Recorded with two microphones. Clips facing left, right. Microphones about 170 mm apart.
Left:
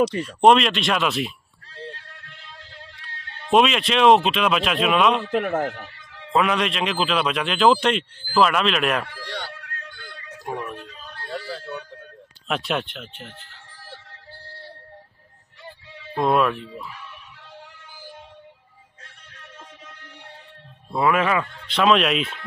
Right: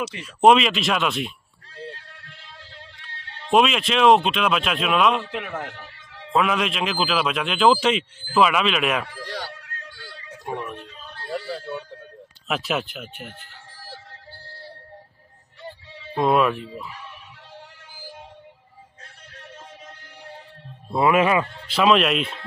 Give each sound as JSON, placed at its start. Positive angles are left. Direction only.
{"t": 0.2, "sound": "a man's voice", "side_deg": 0}
{"t": 3.4, "sound": "a man's voice", "side_deg": 0}
{"t": 5.3, "sound": "speech", "side_deg": 45}
{"t": 6.3, "sound": "a man's voice", "side_deg": 0}
{"t": 9.2, "sound": "a sound", "side_deg": 0}
{"t": 10.6, "sound": "speech", "side_deg": 0}
{"t": 11.2, "sound": "a sound", "side_deg": -5}
{"t": 12.4, "sound": "a man's voice", "side_deg": 0}
{"t": 16.2, "sound": "a man's voice", "side_deg": 0}
{"t": 20.9, "sound": "speech", "side_deg": -15}
{"t": 21.6, "sound": "a man's voice", "side_deg": 0}